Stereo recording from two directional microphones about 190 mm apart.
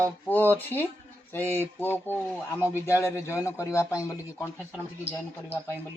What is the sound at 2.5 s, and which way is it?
Speech, 10° right (ahead or behind).